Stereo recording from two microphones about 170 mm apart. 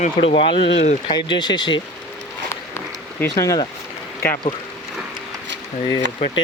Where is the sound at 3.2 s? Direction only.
20° left (ahead or behind).